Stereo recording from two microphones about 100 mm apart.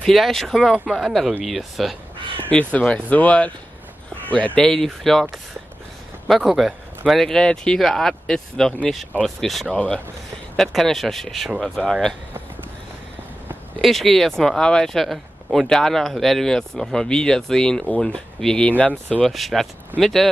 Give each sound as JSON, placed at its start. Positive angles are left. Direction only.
{"t": 0.0, "sound": "speech", "side_deg": 0}
{"t": 2.1, "sound": "crow", "side_deg": -55}
{"t": 2.5, "sound": "speech", "side_deg": 10}
{"t": 6.2, "sound": "speech", "side_deg": 0}
{"t": 13.7, "sound": "speech", "side_deg": 0}